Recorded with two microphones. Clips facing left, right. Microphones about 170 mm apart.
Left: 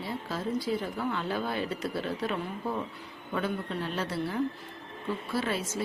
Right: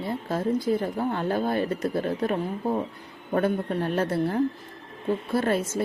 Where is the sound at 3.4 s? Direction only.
50° right (ahead or behind).